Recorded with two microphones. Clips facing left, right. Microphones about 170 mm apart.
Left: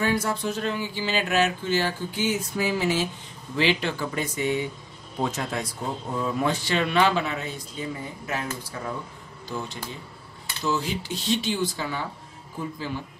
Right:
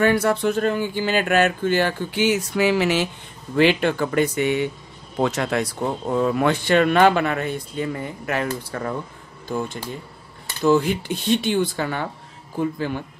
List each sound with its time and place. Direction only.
0.0 s speech: 65° right (ahead or behind)
3.5 s speech: 55° right (ahead or behind)
10.4 s speech: 55° right (ahead or behind)